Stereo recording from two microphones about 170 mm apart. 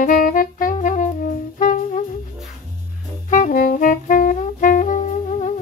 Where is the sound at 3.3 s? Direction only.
50° left (ahead or behind).